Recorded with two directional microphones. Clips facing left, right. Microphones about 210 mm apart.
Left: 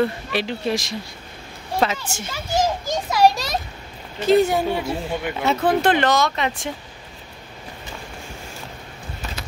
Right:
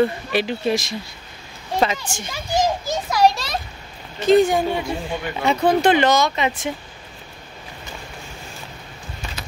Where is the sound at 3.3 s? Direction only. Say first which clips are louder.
Left 2 dB; 40° left (ahead or behind).